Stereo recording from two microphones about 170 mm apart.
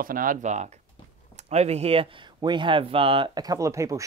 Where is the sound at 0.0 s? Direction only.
55° right (ahead or behind).